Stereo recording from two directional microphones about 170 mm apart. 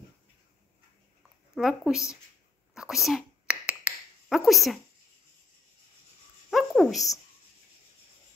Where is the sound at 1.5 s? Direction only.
Centre (ahead or behind).